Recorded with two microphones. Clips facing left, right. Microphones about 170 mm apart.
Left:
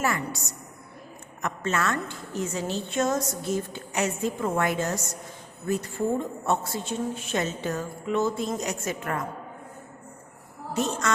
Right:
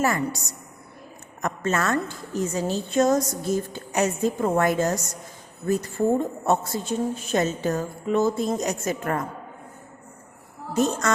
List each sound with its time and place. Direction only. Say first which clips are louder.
0.0 s a woman's voice: right 4 dB; 40° right (ahead or behind)
1.4 s a woman's voice: right 3 dB; 40° right (ahead or behind)